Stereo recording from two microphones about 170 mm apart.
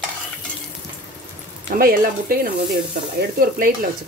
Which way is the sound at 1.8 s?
60° right (ahead or behind).